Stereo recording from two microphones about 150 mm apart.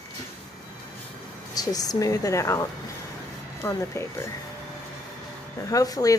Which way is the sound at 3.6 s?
20° left (ahead or behind).